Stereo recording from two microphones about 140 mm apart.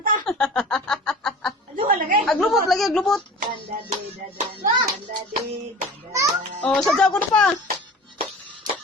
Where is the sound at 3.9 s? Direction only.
55° right (ahead or behind).